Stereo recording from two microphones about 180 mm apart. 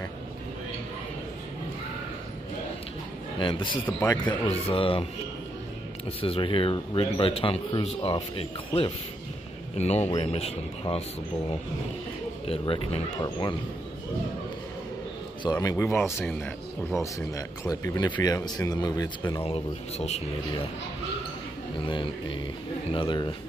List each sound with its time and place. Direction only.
3.3 s speech: 25° left (ahead or behind)
3.8 s speech: 15° left (ahead or behind)
4.3 s speech: 30° left (ahead or behind)
6.0 s speech: 30° left (ahead or behind)
12.4 s speech: 30° left (ahead or behind)
15.5 s speech: 15° left (ahead or behind)
19.4 s speech: 35° left (ahead or behind)
21.7 s speech: 30° left (ahead or behind)